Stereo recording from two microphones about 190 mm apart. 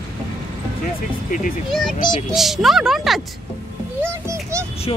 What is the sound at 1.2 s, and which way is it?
Music, 45° left (ahead or behind).